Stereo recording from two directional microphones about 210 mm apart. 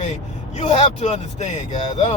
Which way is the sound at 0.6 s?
30° left (ahead or behind).